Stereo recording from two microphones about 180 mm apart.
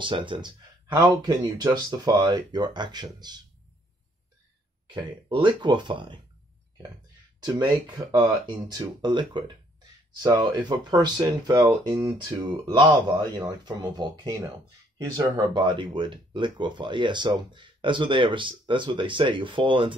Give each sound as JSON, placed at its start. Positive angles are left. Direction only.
{"t": 0.0, "sound": "speech", "side_deg": -25}
{"t": 4.8, "sound": "speech", "side_deg": -25}
{"t": 8.1, "sound": "speech", "side_deg": -25}